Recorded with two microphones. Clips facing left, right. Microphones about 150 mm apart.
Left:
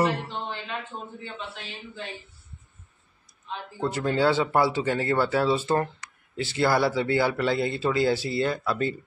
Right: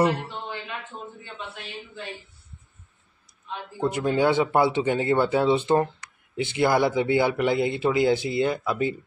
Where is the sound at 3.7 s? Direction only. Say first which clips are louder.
Right 2 dB; 15° right (ahead or behind).